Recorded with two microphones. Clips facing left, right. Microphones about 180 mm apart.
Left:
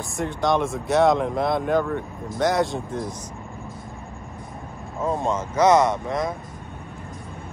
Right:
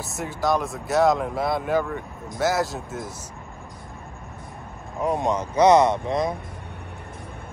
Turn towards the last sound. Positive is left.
turn(degrees=-20)  # may be behind; listen again after turning